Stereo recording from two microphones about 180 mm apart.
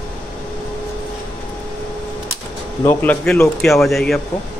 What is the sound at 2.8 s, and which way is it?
Speech, 10° left (ahead or behind).